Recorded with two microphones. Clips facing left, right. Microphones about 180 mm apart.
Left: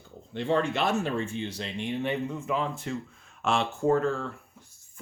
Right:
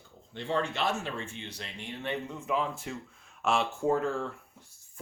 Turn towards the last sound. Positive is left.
turn(degrees=-10)  # may be behind; listen again after turning